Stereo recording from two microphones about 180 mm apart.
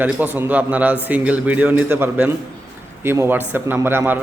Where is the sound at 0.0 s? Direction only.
10° right (ahead or behind).